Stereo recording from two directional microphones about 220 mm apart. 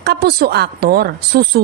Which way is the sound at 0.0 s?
45° right (ahead or behind).